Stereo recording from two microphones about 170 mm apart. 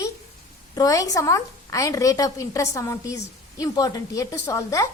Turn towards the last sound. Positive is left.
turn(degrees=20)  # may be behind; listen again after turning